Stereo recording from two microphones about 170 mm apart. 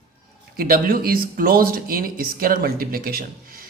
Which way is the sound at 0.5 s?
60° right (ahead or behind).